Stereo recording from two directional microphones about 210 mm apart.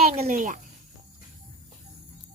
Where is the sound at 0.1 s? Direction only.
35° right (ahead or behind).